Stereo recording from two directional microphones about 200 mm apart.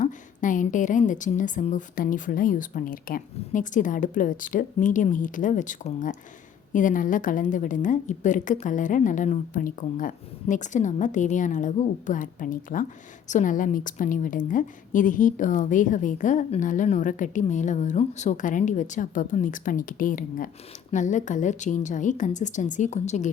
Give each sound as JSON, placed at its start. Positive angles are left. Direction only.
{"t": 0.0, "sound": "a woman's voice", "side_deg": 40}